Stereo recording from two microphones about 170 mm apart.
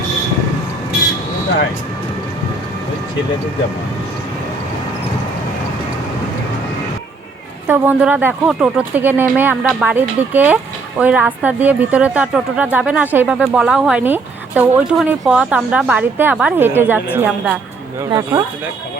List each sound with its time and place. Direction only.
7.7 s speech: 10° right (ahead or behind)
18.1 s speech: 20° right (ahead or behind)